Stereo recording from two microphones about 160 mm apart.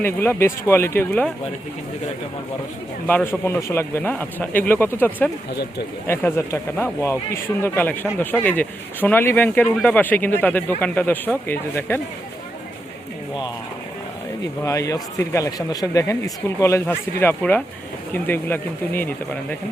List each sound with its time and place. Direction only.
0.0 s speech: 15° left (ahead or behind)
3.1 s speech: 10° left (ahead or behind)
14.6 s speech: 20° left (ahead or behind)